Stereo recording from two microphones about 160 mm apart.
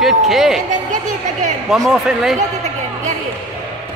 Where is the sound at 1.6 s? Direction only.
Centre (ahead or behind).